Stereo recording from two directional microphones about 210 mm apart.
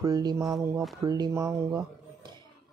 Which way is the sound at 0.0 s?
20° right (ahead or behind).